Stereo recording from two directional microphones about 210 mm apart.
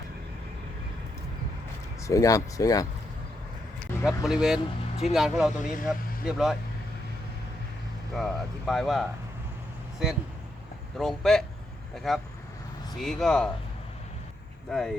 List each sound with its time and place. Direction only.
2.0 s speech: 15° left (ahead or behind)
4.0 s speech: centre (ahead or behind)
5.5 s speech: 40° left (ahead or behind)
6.2 s speech: centre (ahead or behind)
8.1 s speech: centre (ahead or behind)
10.9 s speech: centre (ahead or behind)
14.7 s speech: centre (ahead or behind)